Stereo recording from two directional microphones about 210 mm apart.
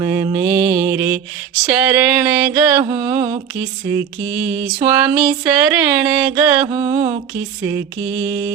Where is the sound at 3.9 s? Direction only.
5° right (ahead or behind).